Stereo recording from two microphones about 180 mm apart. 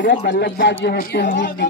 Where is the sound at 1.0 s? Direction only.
55° left (ahead or behind).